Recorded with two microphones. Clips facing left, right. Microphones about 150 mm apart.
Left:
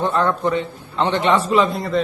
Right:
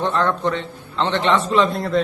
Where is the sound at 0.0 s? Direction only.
10° left (ahead or behind).